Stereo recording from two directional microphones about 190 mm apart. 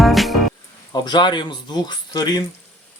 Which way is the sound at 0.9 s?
20° left (ahead or behind).